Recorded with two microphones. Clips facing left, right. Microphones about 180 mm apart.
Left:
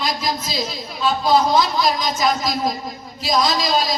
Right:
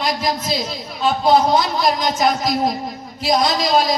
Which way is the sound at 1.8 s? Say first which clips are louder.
Right 2 dB; 60° right (ahead or behind).